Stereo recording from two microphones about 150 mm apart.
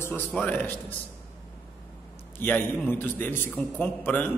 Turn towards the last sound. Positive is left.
turn(degrees=15)  # may be behind; listen again after turning